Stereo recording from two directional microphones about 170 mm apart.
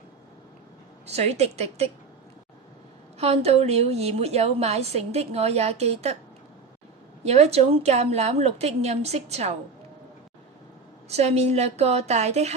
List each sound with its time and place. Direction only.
1.0 s a woman's voice: 40° right (ahead or behind)
3.2 s a woman's voice: 35° right (ahead or behind)
7.3 s a woman's voice: 40° right (ahead or behind)
11.1 s a woman's voice: 40° right (ahead or behind)